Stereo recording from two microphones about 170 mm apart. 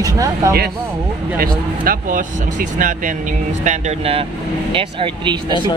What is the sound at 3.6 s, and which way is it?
Speech, 40° right (ahead or behind).